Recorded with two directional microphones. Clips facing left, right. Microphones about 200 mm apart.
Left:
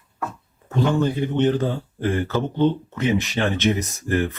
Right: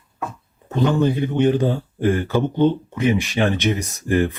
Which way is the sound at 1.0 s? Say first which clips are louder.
Right 2 dB; 15° right (ahead or behind).